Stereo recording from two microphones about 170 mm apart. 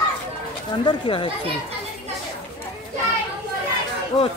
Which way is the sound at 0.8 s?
30° left (ahead or behind).